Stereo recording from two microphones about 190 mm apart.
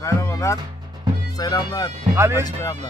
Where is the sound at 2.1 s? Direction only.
15° right (ahead or behind).